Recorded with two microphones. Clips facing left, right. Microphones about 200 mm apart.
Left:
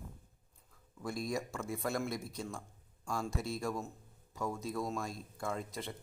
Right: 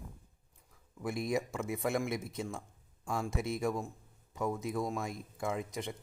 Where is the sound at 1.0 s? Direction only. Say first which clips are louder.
Right 4 dB; 20° right (ahead or behind).